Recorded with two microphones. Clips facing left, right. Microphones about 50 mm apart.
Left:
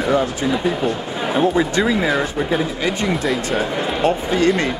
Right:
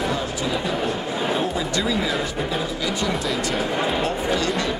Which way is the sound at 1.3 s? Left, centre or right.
Left.